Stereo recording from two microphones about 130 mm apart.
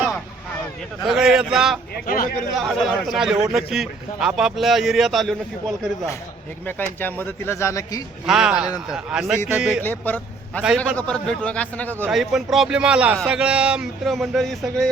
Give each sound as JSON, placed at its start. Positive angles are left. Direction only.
{"t": 1.0, "sound": "speech", "side_deg": -5}
{"t": 2.0, "sound": "a man's voice", "side_deg": 90}
{"t": 2.6, "sound": "speech", "side_deg": 0}
{"t": 6.7, "sound": "speech", "side_deg": 15}
{"t": 8.3, "sound": "speech", "side_deg": -5}
{"t": 9.8, "sound": "a man's voice", "side_deg": 15}
{"t": 12.1, "sound": "speech", "side_deg": 0}